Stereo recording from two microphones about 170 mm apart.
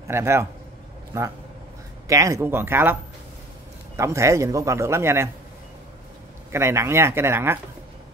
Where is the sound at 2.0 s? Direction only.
20° right (ahead or behind).